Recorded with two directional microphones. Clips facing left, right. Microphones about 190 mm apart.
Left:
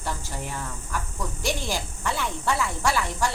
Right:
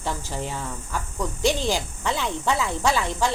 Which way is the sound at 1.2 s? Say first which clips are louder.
Right 7 dB; 20° right (ahead or behind).